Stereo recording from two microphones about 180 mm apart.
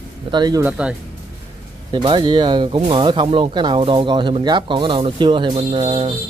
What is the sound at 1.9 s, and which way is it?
Speech, 25° right (ahead or behind).